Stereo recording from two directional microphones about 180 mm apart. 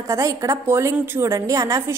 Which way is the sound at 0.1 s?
15° right (ahead or behind).